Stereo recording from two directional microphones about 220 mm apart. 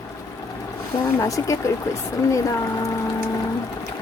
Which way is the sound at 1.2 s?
15° left (ahead or behind).